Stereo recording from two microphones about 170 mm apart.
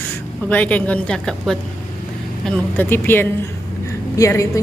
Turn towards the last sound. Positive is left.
turn(degrees=20)  # may be behind; listen again after turning